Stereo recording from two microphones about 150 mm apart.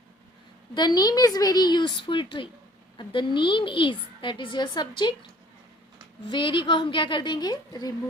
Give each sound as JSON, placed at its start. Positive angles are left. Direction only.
{"t": 0.7, "sound": "a woman's voice", "side_deg": 30}
{"t": 6.2, "sound": "a woman's voice", "side_deg": 30}